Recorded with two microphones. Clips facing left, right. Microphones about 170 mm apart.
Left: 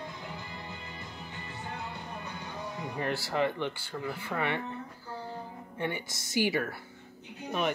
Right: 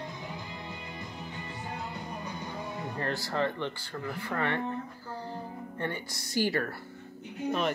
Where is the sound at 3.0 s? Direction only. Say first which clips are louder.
Left 1 dB; 10° left (ahead or behind).